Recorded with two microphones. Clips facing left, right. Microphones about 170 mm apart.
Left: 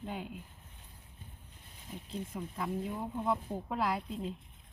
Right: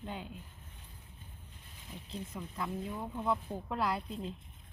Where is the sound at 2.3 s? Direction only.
5° left (ahead or behind).